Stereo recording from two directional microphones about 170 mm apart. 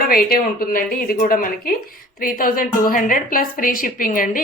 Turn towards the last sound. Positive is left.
turn(degrees=55)  # may be behind; listen again after turning